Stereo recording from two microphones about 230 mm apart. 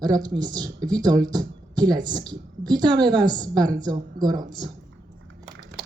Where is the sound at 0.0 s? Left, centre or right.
Centre.